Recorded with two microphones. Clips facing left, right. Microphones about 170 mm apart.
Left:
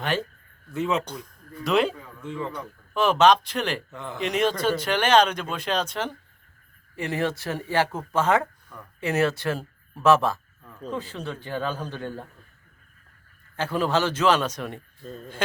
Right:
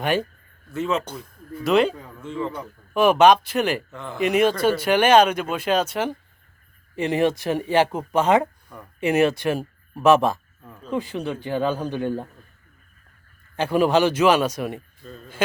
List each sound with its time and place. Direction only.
0.0 s speech: 10° right (ahead or behind)
0.7 s speech: 15° left (ahead or behind)
1.0 s speech: 5° right (ahead or behind)
3.9 s speech: 15° left (ahead or behind)
4.2 s speech: 10° right (ahead or behind)
6.9 s speech: 20° right (ahead or behind)
13.6 s speech: 15° right (ahead or behind)